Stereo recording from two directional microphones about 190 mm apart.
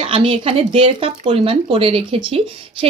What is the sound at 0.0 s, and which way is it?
Speech, 30° right (ahead or behind).